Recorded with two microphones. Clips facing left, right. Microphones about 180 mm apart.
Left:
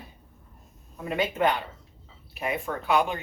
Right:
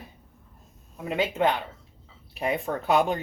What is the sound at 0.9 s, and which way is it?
Speech, 20° right (ahead or behind).